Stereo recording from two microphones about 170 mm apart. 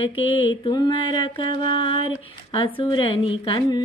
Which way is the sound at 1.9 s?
30° left (ahead or behind).